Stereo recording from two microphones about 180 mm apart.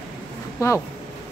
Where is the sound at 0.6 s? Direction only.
20° left (ahead or behind).